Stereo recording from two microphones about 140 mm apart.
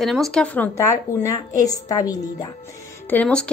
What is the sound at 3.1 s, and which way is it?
Speech, 10° left (ahead or behind).